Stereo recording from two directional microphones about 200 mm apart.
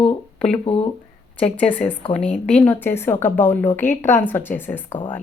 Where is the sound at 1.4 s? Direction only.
5° left (ahead or behind).